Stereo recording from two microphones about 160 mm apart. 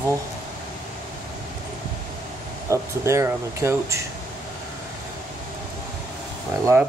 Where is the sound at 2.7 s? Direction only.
15° right (ahead or behind).